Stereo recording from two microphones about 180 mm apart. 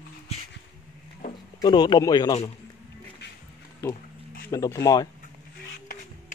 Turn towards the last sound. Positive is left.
turn(degrees=20)  # may be behind; listen again after turning